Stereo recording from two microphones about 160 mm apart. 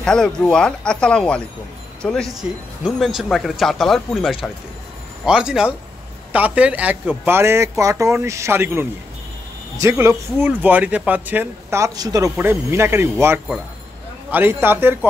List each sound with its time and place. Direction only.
0.0 s speech: 5° left (ahead or behind); by 15.0 s 15° right (ahead or behind)